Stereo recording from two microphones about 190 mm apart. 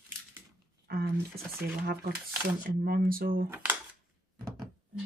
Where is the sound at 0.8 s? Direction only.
55° right (ahead or behind).